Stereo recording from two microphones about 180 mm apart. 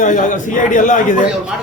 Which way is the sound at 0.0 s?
45° left (ahead or behind).